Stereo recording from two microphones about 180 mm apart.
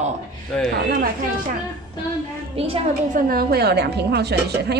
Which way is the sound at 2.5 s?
30° right (ahead or behind).